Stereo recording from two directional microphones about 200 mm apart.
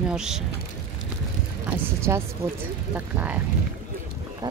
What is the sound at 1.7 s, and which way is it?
Speech, 15° right (ahead or behind).